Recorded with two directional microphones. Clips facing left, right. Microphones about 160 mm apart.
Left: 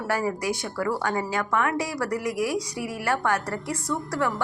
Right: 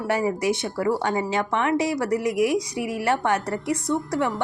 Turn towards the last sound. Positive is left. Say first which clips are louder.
# right 3 dB
turn(degrees=-20)  # may be behind; listen again after turning